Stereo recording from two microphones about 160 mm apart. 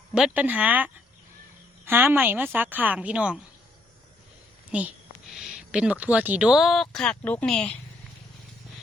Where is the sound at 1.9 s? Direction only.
10° right (ahead or behind).